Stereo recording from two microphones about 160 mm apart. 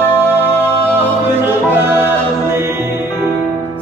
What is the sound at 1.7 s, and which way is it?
Music, 15° right (ahead or behind).